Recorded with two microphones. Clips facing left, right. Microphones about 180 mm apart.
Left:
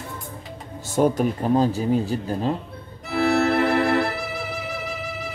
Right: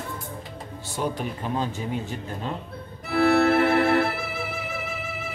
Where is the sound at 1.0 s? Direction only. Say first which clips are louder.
Left 9 dB; 40° left (ahead or behind).